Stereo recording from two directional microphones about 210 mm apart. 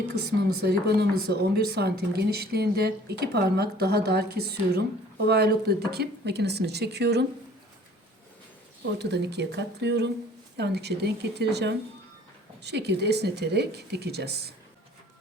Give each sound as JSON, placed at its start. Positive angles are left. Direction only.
{"t": 0.6, "sound": "speech", "side_deg": -50}
{"t": 8.8, "sound": "speech", "side_deg": -55}